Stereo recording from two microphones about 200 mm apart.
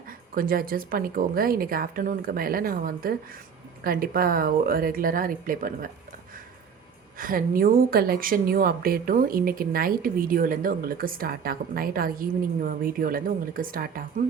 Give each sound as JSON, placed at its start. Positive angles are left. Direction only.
{"t": 0.3, "sound": "a woman's voice", "side_deg": -45}
{"t": 7.2, "sound": "a woman's voice", "side_deg": -45}